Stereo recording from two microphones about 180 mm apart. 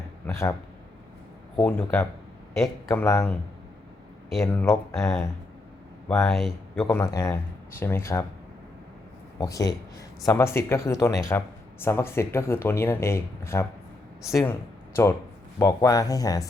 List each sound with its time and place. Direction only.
0.3 s speech: 15° left (ahead or behind)
1.6 s speech: 10° left (ahead or behind)
4.5 s speech: 15° left (ahead or behind)
6.3 s speech: centre (ahead or behind)
6.9 s speech: 20° left (ahead or behind)
9.4 s speech: 20° left (ahead or behind)
15.0 s speech: 15° left (ahead or behind)